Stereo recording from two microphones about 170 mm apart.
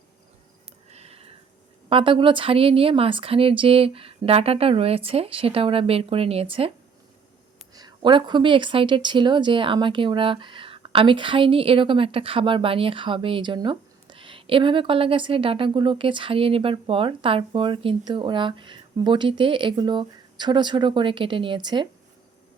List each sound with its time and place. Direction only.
0.9 s a sound: 40° right (ahead or behind)
1.9 s a woman's voice: 30° right (ahead or behind)
7.7 s a woman's voice: 25° right (ahead or behind)